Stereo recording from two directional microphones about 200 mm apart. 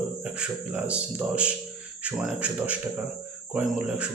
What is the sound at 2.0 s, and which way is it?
Speech, 5° right (ahead or behind).